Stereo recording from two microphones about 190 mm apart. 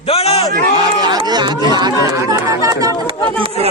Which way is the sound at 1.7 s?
20° right (ahead or behind).